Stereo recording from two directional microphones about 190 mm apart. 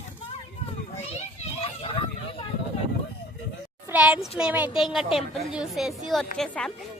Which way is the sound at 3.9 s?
5° right (ahead or behind).